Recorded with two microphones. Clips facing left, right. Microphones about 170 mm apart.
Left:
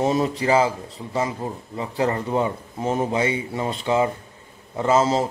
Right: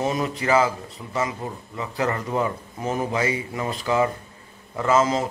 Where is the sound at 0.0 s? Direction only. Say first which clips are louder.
Left 4 dB; 30° left (ahead or behind).